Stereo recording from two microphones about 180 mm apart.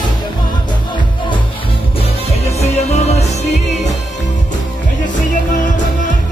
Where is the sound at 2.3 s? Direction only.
35° left (ahead or behind).